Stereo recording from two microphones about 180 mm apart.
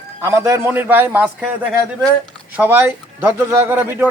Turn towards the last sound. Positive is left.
turn(degrees=-10)  # may be behind; listen again after turning